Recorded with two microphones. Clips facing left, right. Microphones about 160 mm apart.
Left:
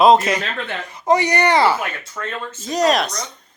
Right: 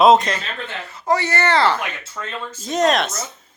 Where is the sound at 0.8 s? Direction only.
15° left (ahead or behind).